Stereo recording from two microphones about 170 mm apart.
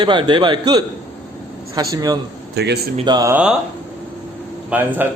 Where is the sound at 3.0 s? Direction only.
20° right (ahead or behind).